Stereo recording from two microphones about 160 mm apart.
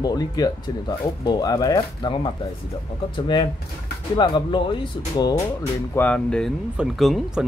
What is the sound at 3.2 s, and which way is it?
Speech, 30° left (ahead or behind).